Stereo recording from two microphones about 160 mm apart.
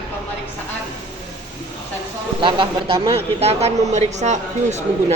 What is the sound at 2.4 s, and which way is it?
A man's voice, 30° right (ahead or behind).